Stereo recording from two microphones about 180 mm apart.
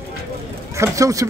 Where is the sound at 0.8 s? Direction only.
15° right (ahead or behind).